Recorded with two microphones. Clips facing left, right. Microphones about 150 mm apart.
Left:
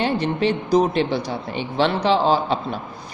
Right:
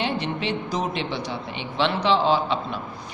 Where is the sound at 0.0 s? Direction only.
40° left (ahead or behind).